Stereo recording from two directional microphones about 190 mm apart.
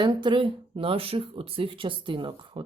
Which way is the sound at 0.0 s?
25° right (ahead or behind).